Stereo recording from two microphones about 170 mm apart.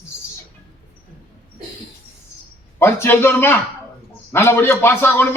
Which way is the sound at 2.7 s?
15° left (ahead or behind).